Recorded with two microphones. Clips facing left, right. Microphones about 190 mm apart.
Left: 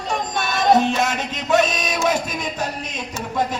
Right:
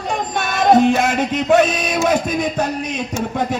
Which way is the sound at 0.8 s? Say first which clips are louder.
Right 6 dB; 55° right (ahead or behind).